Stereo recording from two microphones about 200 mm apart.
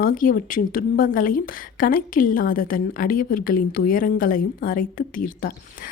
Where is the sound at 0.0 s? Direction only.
40° left (ahead or behind).